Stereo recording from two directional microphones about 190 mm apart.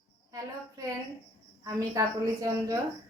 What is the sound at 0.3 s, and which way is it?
Female singing, 15° right (ahead or behind).